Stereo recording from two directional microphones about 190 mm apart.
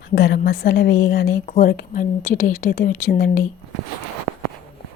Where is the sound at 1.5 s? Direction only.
45° left (ahead or behind).